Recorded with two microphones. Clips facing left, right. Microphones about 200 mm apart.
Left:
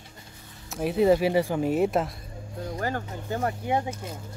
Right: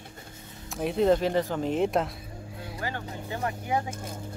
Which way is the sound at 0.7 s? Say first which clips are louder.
Left 2 dB; centre (ahead or behind).